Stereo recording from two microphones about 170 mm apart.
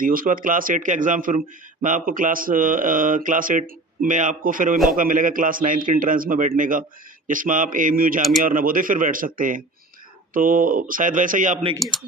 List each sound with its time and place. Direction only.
0.0 s speech: 55° right (ahead or behind)
11.8 s speech: centre (ahead or behind)